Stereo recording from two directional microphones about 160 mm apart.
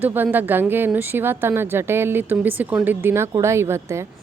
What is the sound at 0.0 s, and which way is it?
Speech, 10° right (ahead or behind).